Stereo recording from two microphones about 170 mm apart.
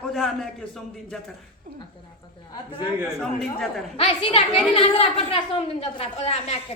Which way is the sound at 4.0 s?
35° left (ahead or behind).